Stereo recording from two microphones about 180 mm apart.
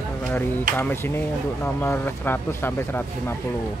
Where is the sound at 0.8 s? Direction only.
10° left (ahead or behind).